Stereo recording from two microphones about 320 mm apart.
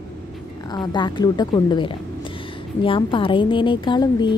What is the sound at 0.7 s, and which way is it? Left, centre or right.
A woman's voice, centre.